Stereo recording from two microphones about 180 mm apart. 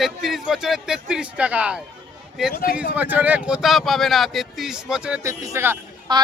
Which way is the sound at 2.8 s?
10° right (ahead or behind).